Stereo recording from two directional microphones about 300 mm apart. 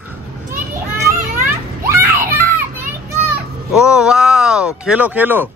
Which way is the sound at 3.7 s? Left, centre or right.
Centre.